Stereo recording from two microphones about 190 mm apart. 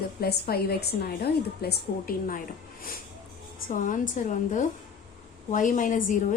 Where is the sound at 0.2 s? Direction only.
55° left (ahead or behind).